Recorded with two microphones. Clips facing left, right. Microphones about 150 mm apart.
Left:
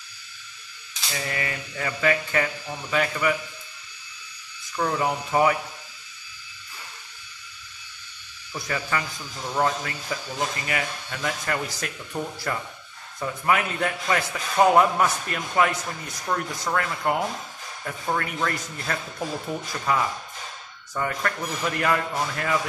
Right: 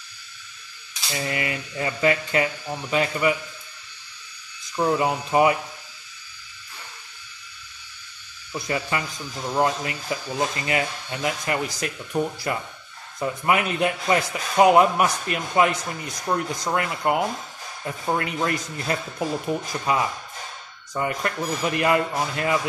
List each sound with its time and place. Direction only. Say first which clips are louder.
1.1 s a man's voice: right 3 dB; 20° right (ahead or behind)
4.7 s a man's voice: right 3 dB; 20° right (ahead or behind)
8.5 s a man's voice: right 2 dB; 20° right (ahead or behind)